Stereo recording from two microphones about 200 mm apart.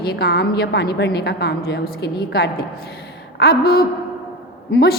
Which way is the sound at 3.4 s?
50° left (ahead or behind).